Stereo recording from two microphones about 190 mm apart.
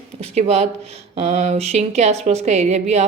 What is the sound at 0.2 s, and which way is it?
Speech, 35° right (ahead or behind).